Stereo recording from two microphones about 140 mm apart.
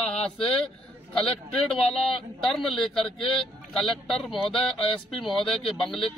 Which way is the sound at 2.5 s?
Centre (ahead or behind).